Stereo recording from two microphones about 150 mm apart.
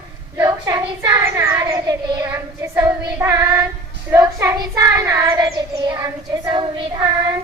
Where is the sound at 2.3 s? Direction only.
20° right (ahead or behind).